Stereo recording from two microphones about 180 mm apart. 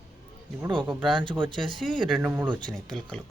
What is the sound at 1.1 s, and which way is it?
Speech, 25° right (ahead or behind).